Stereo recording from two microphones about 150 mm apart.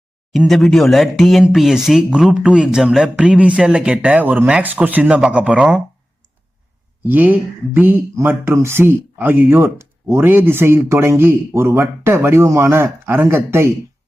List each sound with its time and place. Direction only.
0.3 s speech: centre (ahead or behind)
7.0 s speech: 10° right (ahead or behind)